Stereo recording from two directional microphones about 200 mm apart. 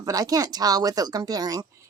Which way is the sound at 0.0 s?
20° right (ahead or behind).